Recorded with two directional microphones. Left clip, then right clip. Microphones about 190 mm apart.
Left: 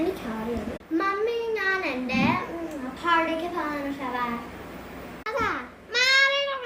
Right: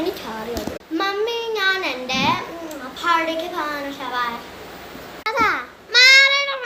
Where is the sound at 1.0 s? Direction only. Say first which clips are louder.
Right 3 dB; 10° left (ahead or behind).